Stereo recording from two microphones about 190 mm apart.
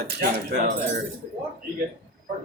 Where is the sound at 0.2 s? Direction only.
55° right (ahead or behind).